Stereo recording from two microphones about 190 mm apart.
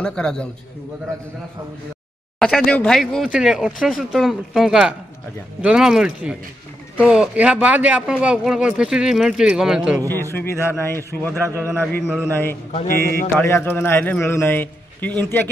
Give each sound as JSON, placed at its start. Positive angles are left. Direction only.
{"t": 0.0, "sound": "speech", "side_deg": 5}
{"t": 2.3, "sound": "speech", "side_deg": 5}
{"t": 10.3, "sound": "a man's voice", "side_deg": 10}
{"t": 12.9, "sound": "mantra", "side_deg": -55}
{"t": 13.4, "sound": "a man's voice", "side_deg": 10}